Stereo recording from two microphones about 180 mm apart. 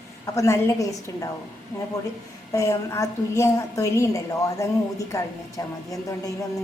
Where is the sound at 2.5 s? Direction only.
15° left (ahead or behind).